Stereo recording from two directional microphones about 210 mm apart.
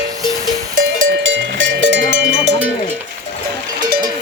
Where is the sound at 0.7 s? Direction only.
60° right (ahead or behind).